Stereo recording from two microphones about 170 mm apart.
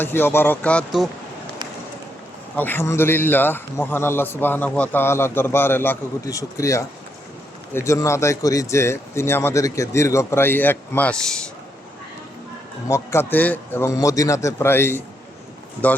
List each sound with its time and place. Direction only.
0.0 s a man's voice: 15° left (ahead or behind)
2.6 s a man's voice: 10° left (ahead or behind)
12.9 s a man's voice: 15° left (ahead or behind)